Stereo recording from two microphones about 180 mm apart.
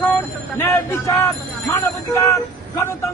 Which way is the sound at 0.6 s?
15° left (ahead or behind).